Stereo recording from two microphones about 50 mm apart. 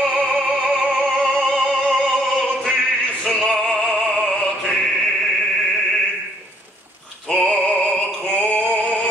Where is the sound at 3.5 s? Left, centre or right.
Centre.